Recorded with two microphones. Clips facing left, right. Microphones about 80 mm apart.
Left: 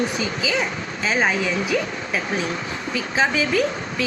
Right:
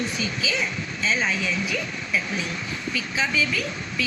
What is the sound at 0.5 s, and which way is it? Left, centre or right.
Speech, left.